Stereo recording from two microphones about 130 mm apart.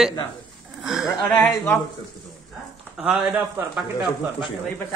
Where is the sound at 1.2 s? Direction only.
10° left (ahead or behind).